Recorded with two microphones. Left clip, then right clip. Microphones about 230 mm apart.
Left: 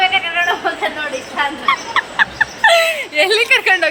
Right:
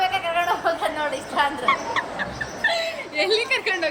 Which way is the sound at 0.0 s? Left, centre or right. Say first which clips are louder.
Left 7 dB; right.